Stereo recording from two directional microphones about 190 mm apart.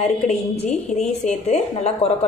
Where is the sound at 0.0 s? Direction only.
35° left (ahead or behind).